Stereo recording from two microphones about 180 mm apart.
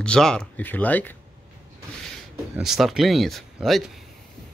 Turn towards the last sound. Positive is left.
turn(degrees=0)  # may be behind; listen again after turning